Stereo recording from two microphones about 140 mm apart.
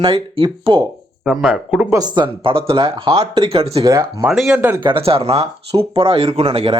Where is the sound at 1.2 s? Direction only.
Centre (ahead or behind).